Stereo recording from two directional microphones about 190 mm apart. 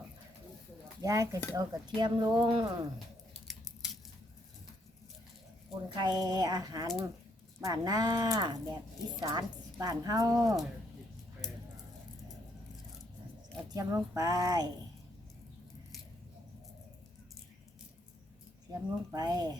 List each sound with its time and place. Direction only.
1.0 s speech: 15° right (ahead or behind)
3.4 s scissors: centre (ahead or behind)
5.7 s a woman's voice: 20° right (ahead or behind)
13.7 s speech: 15° right (ahead or behind)
18.7 s speech: 20° right (ahead or behind)